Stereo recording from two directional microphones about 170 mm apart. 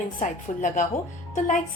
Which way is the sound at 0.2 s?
50° left (ahead or behind).